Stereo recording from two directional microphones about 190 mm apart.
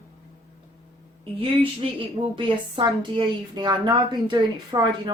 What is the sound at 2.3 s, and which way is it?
A woman's voice, 25° right (ahead or behind).